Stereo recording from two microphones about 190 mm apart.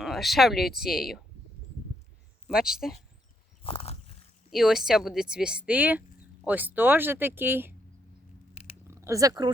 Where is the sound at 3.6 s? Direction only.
30° left (ahead or behind).